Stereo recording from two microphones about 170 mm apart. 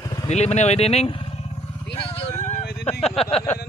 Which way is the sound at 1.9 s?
35° left (ahead or behind).